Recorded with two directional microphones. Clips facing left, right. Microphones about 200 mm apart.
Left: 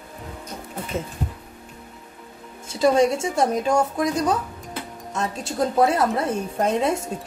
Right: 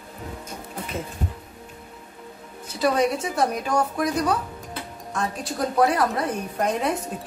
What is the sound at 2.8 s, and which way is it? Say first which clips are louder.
A woman's voice: left 4 dB; 25° left (ahead or behind).